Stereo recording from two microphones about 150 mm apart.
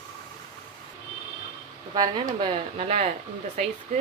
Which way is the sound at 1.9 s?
30° right (ahead or behind).